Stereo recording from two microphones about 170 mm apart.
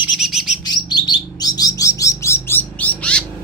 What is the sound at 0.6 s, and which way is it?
Bird, 25° left (ahead or behind).